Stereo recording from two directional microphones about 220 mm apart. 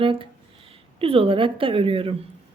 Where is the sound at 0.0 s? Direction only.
25° right (ahead or behind).